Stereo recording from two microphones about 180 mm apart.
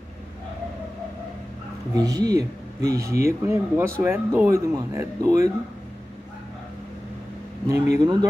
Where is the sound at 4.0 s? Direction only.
15° right (ahead or behind).